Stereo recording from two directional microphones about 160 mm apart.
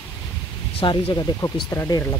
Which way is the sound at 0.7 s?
35° left (ahead or behind).